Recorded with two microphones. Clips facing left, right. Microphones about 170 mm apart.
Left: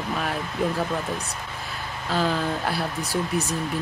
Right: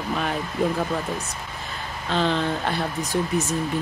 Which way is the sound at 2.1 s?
5° left (ahead or behind).